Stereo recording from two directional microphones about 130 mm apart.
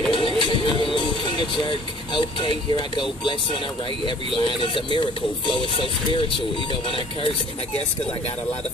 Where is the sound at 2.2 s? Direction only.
40° left (ahead or behind).